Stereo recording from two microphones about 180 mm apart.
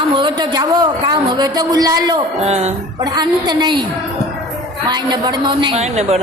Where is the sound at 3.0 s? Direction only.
25° right (ahead or behind).